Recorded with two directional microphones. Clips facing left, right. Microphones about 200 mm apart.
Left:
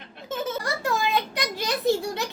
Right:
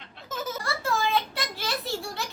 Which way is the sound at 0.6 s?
15° left (ahead or behind).